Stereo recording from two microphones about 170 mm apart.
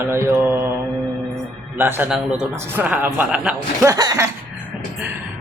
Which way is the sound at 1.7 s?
10° right (ahead or behind).